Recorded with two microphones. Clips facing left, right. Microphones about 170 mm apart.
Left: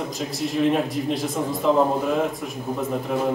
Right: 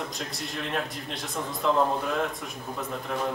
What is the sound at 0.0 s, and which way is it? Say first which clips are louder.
A man's voice: left 8 dB; centre (ahead or behind).